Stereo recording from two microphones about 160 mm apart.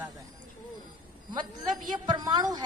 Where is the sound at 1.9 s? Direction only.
25° right (ahead or behind).